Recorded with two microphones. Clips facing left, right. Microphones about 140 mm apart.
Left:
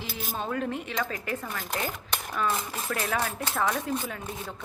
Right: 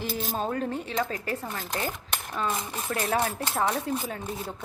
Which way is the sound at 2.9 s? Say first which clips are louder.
Right 3 dB; 30° right (ahead or behind).